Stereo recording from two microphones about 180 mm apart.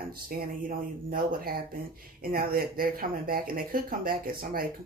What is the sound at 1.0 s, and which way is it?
Speech, 55° right (ahead or behind).